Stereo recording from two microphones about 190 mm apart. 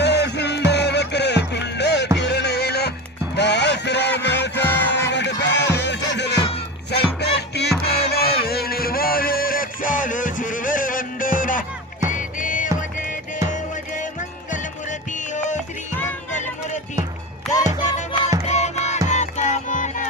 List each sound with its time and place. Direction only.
0.0 s music: 65° left (ahead or behind)
4.6 s music: 10° left (ahead or behind)
4.9 s music: 65° left (ahead or behind); by 12.6 s 45° left (ahead or behind)
14.5 s music: 40° left (ahead or behind)
17.5 s music: centre (ahead or behind)
18.4 s music: 35° left (ahead or behind)